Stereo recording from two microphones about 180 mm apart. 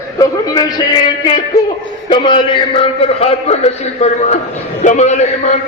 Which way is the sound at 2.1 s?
30° left (ahead or behind).